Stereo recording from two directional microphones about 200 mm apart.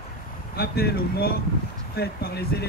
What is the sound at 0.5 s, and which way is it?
Speech, 50° left (ahead or behind).